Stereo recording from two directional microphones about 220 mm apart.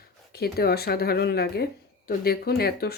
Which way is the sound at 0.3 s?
45° left (ahead or behind).